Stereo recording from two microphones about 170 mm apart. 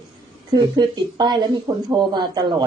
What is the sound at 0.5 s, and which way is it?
Speech, 25° right (ahead or behind).